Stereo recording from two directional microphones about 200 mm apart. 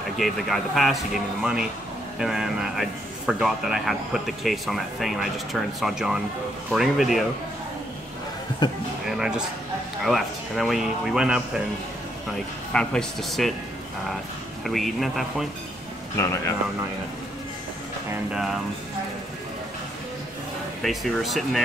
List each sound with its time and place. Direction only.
0.2 s speech: centre (ahead or behind)
8.6 s a man's voice: 25° left (ahead or behind)
9.1 s speech: 5° right (ahead or behind)
12.7 s speech: centre (ahead or behind)
14.6 s speech: centre (ahead or behind)
18.3 s speech: centre (ahead or behind)
20.8 s speech: centre (ahead or behind)